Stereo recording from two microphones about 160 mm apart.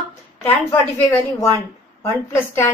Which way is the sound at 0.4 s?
10° left (ahead or behind).